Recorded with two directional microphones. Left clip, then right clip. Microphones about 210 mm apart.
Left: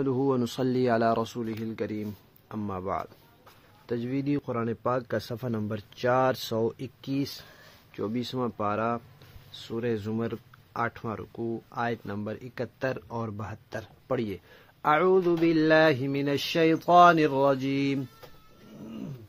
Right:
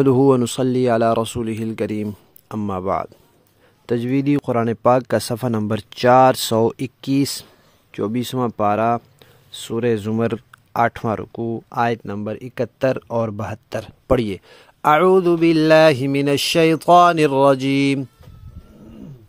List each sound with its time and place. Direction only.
0.0 s speech: 50° right (ahead or behind)